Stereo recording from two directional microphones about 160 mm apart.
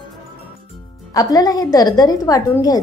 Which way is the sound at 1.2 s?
25° left (ahead or behind).